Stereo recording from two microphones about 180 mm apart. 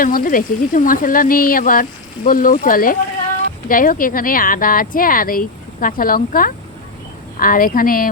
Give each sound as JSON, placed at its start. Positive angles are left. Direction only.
{"t": 0.0, "sound": "speech", "side_deg": 50}